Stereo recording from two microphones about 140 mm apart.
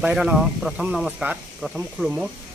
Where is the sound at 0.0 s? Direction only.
5° right (ahead or behind).